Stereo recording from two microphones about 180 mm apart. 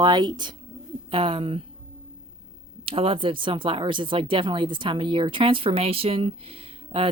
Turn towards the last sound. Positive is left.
turn(degrees=-30)  # may be behind; listen again after turning